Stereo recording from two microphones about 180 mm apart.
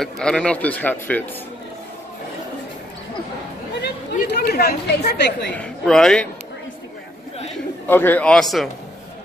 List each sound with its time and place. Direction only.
0.0 s speech: 5° left (ahead or behind)
3.8 s speech: 65° left (ahead or behind)
5.6 s speech: 5° left (ahead or behind)
7.9 s speech: 10° left (ahead or behind)